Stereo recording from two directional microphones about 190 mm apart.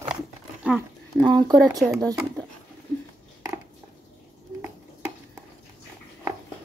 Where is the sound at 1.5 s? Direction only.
20° right (ahead or behind).